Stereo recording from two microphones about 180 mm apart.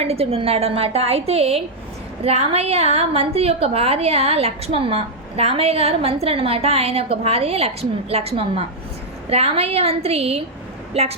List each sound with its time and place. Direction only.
0.0 s a woman's voice: 35° right (ahead or behind)